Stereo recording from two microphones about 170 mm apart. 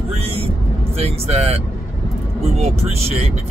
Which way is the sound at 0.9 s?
35° right (ahead or behind).